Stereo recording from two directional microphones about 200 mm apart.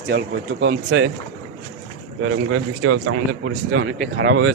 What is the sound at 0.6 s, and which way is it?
Speech, 80° right.